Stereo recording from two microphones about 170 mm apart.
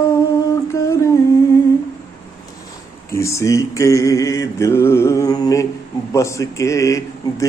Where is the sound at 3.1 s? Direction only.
15° left (ahead or behind).